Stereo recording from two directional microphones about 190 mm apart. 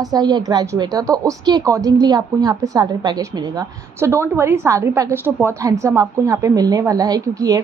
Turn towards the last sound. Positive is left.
turn(degrees=-20)  # may be behind; listen again after turning